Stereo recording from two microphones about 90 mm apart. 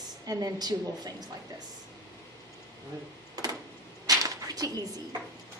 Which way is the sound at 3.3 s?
45° right (ahead or behind).